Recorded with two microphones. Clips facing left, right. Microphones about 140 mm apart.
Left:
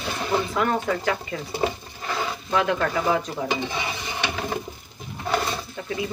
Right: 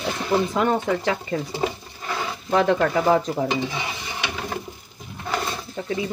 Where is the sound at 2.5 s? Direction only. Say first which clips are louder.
Right 4 dB; 35° right (ahead or behind).